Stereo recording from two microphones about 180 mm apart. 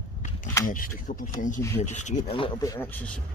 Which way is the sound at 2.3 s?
25° left (ahead or behind).